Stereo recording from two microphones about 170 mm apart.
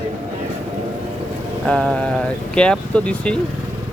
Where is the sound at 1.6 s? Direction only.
5° left (ahead or behind).